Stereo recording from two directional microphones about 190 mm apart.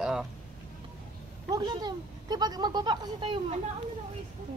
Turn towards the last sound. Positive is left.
turn(degrees=-25)  # may be behind; listen again after turning